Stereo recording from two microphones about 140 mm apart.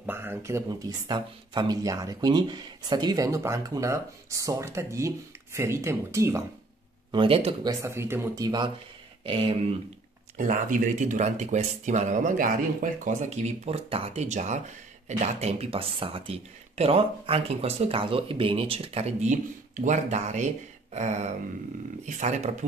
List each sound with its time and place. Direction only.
0.0 s speech: 15° right (ahead or behind)
7.1 s speech: 40° right (ahead or behind)
7.6 s speech: 20° right (ahead or behind); by 9.5 s 40° right (ahead or behind)
10.3 s speech: 65° right (ahead or behind)